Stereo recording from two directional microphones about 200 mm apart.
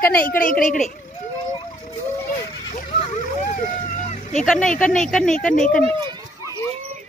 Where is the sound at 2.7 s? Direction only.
35° left (ahead or behind).